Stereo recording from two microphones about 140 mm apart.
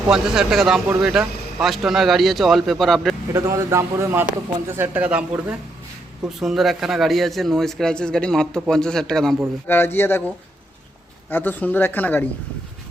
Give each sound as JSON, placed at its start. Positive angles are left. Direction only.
{"t": 0.1, "sound": "a man's voice", "side_deg": -5}
{"t": 3.3, "sound": "a man's voice", "side_deg": -20}
{"t": 9.6, "sound": "speech", "side_deg": 15}